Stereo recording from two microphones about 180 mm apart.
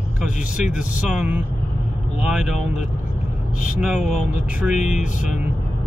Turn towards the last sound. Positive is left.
turn(degrees=40)  # may be behind; listen again after turning